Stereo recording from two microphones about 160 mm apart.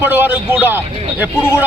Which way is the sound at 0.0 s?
10° right (ahead or behind).